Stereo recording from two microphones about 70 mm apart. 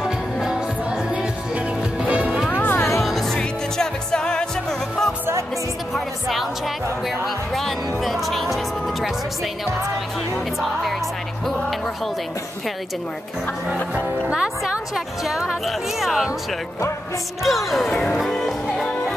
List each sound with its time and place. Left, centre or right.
0.0 s music: centre
2.5 s music: left
3.0 s music: centre
10.3 s speech: centre
13.9 s speech: right
14.7 s speech: centre
17.4 s speech: centre
18.1 s music: centre